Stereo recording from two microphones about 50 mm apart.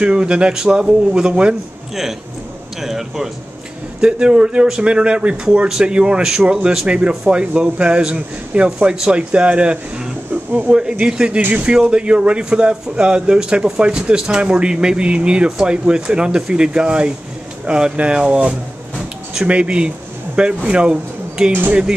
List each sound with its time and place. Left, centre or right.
0.0 s speech: right
2.8 s a man's voice: centre
4.0 s a man's voice: right
21.5 s speech: right